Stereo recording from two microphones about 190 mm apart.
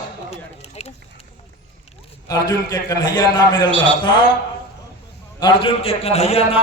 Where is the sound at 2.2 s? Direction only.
20° left (ahead or behind).